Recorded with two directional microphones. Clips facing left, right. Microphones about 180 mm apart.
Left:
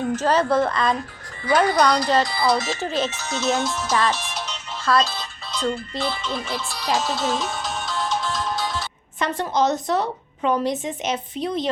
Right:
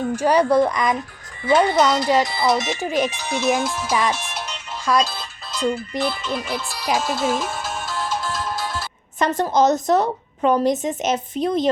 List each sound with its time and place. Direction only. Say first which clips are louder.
0.2 s speech: right 4 dB; 15° right (ahead or behind)
4.3 s music: right 1 dB; 5° right (ahead or behind)
5.9 s speech: right 3 dB; 5° right (ahead or behind)
6.8 s music: right 2 dB; 10° right (ahead or behind)
9.1 s a woman's voice: right 4 dB; 45° right (ahead or behind)